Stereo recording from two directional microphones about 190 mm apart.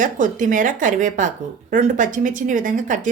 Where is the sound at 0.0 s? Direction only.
45° right (ahead or behind).